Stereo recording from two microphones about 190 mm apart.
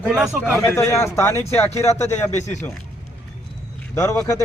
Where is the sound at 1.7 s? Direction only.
35° left (ahead or behind).